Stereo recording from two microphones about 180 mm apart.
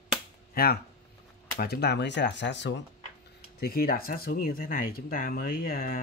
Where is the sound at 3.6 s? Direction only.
55° left (ahead or behind).